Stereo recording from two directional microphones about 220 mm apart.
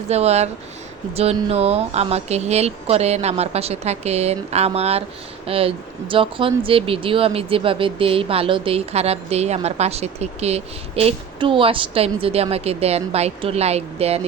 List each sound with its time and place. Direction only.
0.1 s speech: 30° right (ahead or behind)